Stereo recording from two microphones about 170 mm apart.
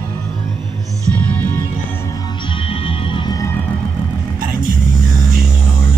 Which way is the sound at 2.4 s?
30° left (ahead or behind).